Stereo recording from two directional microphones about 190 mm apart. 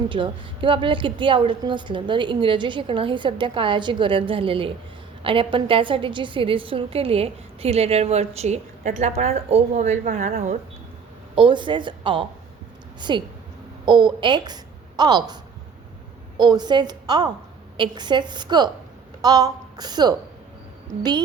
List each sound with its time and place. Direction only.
0.1 s a woman's voice: 25° right (ahead or behind)
11.3 s a woman's voice: 25° right (ahead or behind)
16.4 s a woman's voice: 20° right (ahead or behind)